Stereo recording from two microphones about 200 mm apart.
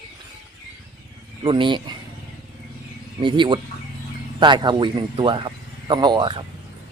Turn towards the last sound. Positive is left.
turn(degrees=-25)  # may be behind; listen again after turning